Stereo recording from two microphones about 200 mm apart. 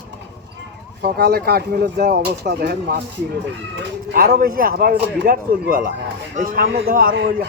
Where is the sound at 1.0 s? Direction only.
50° right (ahead or behind).